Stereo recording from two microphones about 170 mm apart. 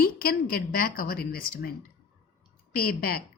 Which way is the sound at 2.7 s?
60° left (ahead or behind).